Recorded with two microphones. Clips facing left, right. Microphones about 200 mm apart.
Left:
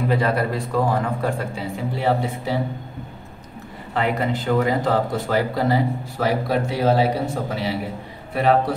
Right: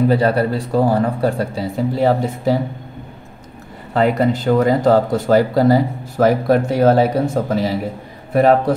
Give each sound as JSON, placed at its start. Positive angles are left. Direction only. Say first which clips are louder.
{"t": 0.1, "sound": "speech", "louder": "right 5 dB", "side_deg": -35}
{"t": 3.9, "sound": "speech", "louder": "right 7 dB", "side_deg": -40}